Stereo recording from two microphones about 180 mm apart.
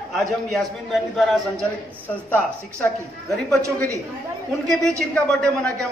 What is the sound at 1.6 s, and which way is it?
A man's voice, 5° left (ahead or behind).